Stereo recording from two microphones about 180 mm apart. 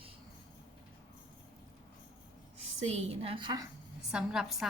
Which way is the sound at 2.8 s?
35° right (ahead or behind).